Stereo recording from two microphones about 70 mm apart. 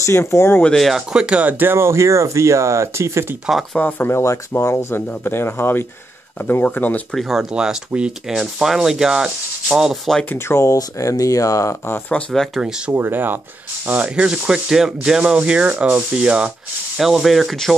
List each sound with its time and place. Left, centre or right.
0.0 s speech: left
0.7 s speech: centre
1.1 s speech: centre; by 3.3 s right
4.0 s speech: left
7.1 s speech: centre
10.3 s speech: left
10.8 s speech: left
12.1 s speech: left
12.5 s speech: centre
12.9 s speech: right; by 17.7 s centre